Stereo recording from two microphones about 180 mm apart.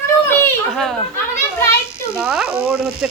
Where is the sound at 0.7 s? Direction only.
5° left (ahead or behind).